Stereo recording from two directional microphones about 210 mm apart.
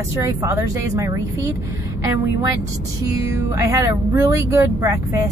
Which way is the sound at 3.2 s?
15° right (ahead or behind).